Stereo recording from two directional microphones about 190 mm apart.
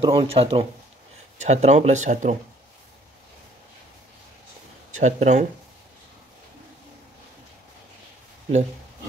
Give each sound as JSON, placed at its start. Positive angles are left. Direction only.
{"t": 0.0, "sound": "speech", "side_deg": -30}
{"t": 4.9, "sound": "speech", "side_deg": -40}